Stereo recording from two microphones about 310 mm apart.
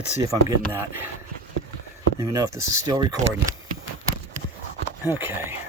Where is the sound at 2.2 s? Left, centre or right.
Centre.